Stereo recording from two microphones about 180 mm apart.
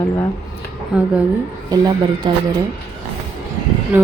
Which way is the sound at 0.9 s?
5° right (ahead or behind).